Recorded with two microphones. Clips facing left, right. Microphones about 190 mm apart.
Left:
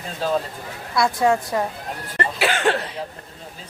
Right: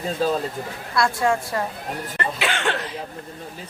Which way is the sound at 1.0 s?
20° left (ahead or behind).